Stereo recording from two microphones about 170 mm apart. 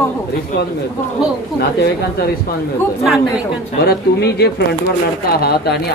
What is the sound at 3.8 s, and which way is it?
Speech, 70° left (ahead or behind).